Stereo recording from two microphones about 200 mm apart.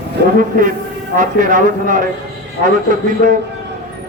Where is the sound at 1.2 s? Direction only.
40° right (ahead or behind).